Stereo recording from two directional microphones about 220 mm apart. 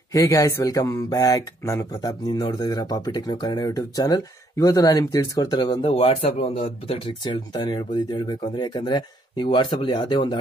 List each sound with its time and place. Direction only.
0.1 s speech: 15° left (ahead or behind)